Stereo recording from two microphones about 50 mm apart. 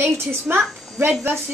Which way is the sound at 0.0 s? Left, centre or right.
Right.